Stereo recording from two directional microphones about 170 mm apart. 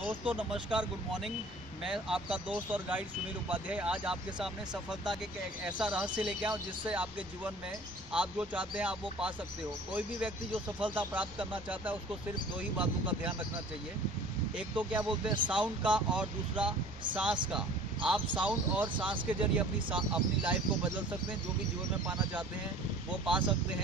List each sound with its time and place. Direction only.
0.0 s speech: 10° right (ahead or behind)
5.7 s speech: 5° right (ahead or behind)
12.8 s speech: 10° right (ahead or behind)
14.8 s speech: 10° right (ahead or behind)
15.0 s speech: 30° right (ahead or behind)
15.4 s speech: 5° right (ahead or behind)